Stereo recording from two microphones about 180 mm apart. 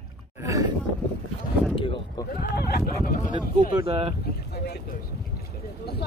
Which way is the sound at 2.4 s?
60° left (ahead or behind).